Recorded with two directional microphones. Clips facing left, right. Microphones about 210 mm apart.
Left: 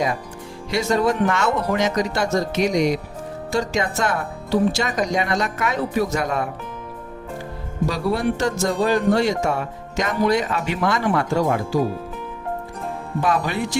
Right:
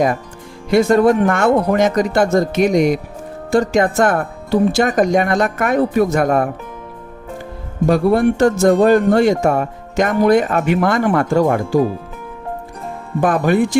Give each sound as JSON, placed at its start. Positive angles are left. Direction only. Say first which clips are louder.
{"t": 0.7, "sound": "speech", "louder": "right 8 dB", "side_deg": -55}
{"t": 7.9, "sound": "speech", "louder": "right 9 dB", "side_deg": -55}
{"t": 13.2, "sound": "speech", "louder": "right 8 dB", "side_deg": -50}